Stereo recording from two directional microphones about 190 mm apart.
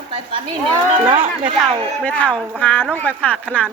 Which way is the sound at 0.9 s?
30° right (ahead or behind).